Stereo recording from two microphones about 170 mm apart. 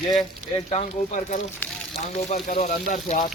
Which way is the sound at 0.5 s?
40° left (ahead or behind).